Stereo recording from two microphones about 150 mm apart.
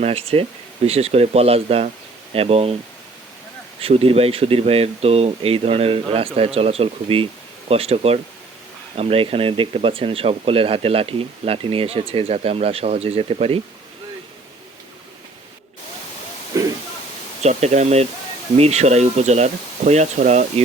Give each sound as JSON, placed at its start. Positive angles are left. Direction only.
{"t": 0.0, "sound": "speech", "side_deg": -40}
{"t": 3.8, "sound": "speech", "side_deg": -40}
{"t": 16.5, "sound": "a sound", "side_deg": -20}
{"t": 17.4, "sound": "speech", "side_deg": -50}